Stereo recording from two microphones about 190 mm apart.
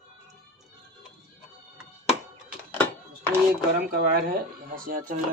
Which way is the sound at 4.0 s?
50° right (ahead or behind).